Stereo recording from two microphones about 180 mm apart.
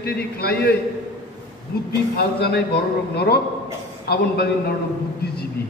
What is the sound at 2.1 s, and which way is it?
A man's voice, 60° left (ahead or behind).